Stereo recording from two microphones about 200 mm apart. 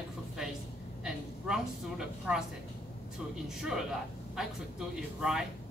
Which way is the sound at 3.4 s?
Centre (ahead or behind).